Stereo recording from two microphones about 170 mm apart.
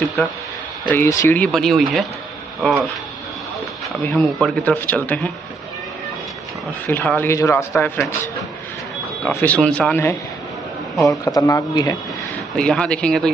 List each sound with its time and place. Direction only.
0.2 s speech: 15° left (ahead or behind)
4.0 s speech: 5° left (ahead or behind)
6.9 s speech: 10° left (ahead or behind)
11.2 s a man's voice: 20° left (ahead or behind)
12.5 s speech: 5° left (ahead or behind)